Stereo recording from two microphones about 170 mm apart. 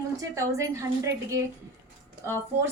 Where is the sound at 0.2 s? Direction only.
20° right (ahead or behind).